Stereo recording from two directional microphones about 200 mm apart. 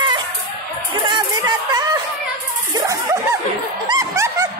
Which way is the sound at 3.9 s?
15° right (ahead or behind).